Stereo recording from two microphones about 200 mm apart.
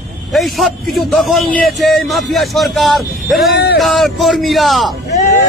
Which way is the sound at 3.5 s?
55° left (ahead or behind).